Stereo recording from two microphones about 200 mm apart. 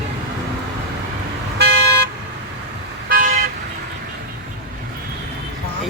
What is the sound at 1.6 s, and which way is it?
Vehicle, 55° right (ahead or behind).